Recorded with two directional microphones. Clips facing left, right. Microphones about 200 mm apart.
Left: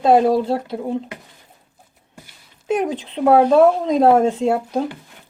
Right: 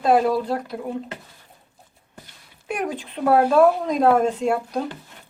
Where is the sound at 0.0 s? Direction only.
25° left (ahead or behind).